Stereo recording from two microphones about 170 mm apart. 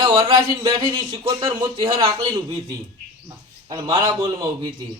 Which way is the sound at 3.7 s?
20° right (ahead or behind).